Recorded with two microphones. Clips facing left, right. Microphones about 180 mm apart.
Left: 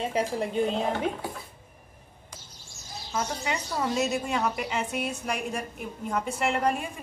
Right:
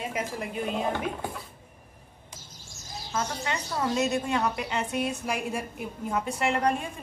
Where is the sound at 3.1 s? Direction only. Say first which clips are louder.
Left 1 dB; 5° left (ahead or behind).